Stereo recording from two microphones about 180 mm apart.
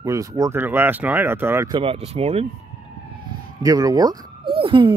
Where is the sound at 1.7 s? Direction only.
30° right (ahead or behind).